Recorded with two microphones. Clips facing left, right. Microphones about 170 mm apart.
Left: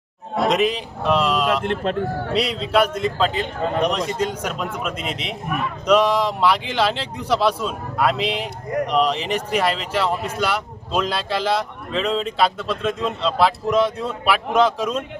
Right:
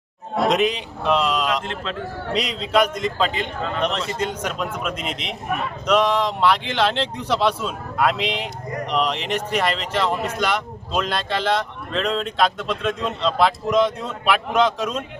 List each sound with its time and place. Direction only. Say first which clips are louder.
0.3 s a man's voice: even; centre (ahead or behind)
1.6 s speech: left 7 dB; 55° left (ahead or behind)
2.3 s speech: even; 5° left (ahead or behind)